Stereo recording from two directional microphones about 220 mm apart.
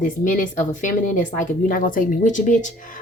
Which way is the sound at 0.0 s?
40° left (ahead or behind).